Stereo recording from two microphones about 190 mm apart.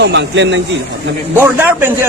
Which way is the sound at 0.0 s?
65° right (ahead or behind).